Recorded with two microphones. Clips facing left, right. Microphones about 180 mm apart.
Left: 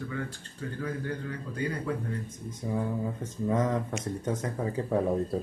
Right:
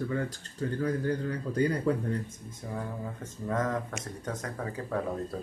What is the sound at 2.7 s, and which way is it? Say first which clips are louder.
Speech: left 6 dB; 15° left (ahead or behind).